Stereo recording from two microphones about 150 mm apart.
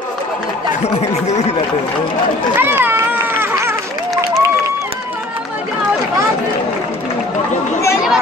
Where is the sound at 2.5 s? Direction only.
15° right (ahead or behind).